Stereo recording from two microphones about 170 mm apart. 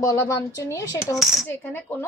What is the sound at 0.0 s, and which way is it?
Speech, 20° left (ahead or behind).